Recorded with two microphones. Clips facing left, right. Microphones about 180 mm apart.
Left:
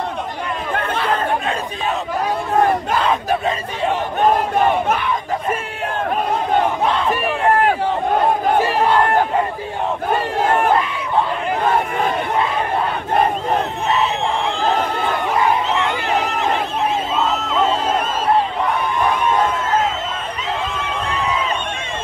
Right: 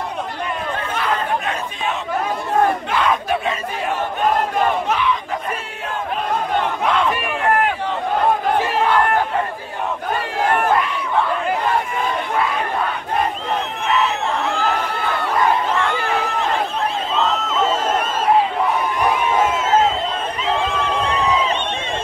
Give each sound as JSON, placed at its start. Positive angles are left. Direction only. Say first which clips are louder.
{"t": 2.9, "sound": "battle cry", "louder": "left 1 dB", "side_deg": 35}
{"t": 4.8, "sound": "battle cry", "louder": "even", "side_deg": 50}
{"t": 17.1, "sound": "a sound", "louder": "left 1 dB", "side_deg": 5}